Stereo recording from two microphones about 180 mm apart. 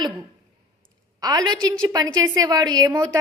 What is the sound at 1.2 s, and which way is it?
A woman's voice, 20° right (ahead or behind).